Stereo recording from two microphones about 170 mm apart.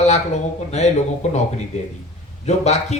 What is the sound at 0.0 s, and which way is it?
Speech, 40° left (ahead or behind).